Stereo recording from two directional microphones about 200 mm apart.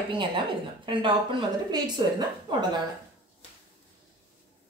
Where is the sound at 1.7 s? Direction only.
20° right (ahead or behind).